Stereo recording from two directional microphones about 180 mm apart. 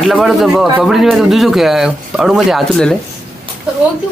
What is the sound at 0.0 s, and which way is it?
Speech, centre (ahead or behind).